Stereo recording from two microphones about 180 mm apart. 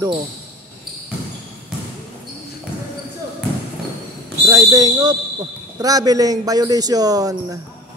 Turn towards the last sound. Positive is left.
turn(degrees=-20)  # may be behind; listen again after turning